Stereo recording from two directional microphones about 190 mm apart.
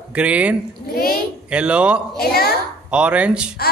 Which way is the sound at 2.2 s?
55° left (ahead or behind).